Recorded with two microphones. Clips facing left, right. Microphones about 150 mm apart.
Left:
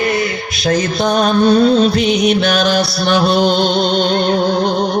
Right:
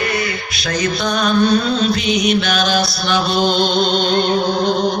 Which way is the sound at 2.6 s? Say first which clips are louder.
Left 3 dB; 60° left (ahead or behind).